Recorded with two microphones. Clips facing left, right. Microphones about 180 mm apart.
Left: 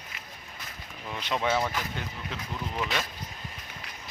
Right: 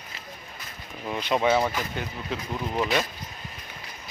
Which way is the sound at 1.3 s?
15° right (ahead or behind).